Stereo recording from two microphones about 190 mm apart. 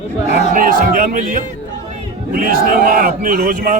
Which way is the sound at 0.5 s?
45° right (ahead or behind).